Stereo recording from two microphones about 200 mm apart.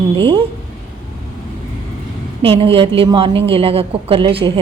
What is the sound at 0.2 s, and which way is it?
Speech, 25° right (ahead or behind).